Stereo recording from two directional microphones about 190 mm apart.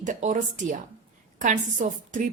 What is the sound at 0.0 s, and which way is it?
A woman's voice, 40° right (ahead or behind).